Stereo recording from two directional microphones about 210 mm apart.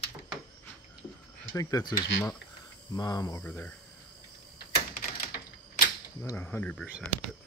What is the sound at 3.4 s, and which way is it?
Speech, 5° left (ahead or behind).